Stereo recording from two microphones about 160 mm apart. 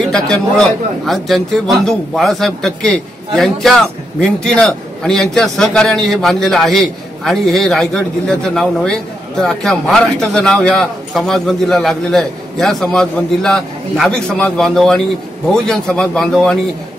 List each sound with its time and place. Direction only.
0.1 s a man's voice: 5° left (ahead or behind)